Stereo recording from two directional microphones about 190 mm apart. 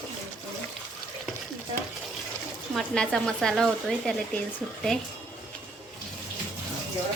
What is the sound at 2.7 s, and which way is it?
Speech, 5° left (ahead or behind).